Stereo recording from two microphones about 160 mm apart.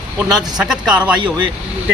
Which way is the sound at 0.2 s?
5° right (ahead or behind).